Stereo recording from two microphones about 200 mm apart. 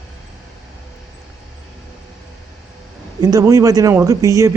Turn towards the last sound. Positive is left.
turn(degrees=-15)  # may be behind; listen again after turning